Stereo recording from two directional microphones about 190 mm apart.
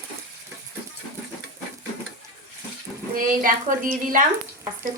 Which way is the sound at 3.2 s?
45° right (ahead or behind).